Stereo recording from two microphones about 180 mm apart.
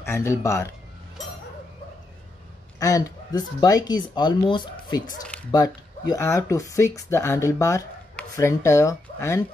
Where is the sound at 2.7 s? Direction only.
20° left (ahead or behind).